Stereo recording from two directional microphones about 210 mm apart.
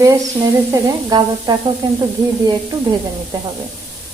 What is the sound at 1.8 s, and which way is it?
Speech, 20° right (ahead or behind).